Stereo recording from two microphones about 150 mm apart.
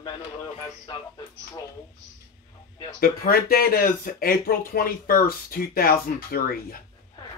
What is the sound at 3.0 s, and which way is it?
Speech, 75° left (ahead or behind).